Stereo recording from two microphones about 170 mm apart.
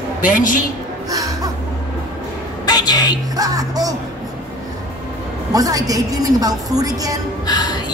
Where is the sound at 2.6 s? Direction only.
25° left (ahead or behind).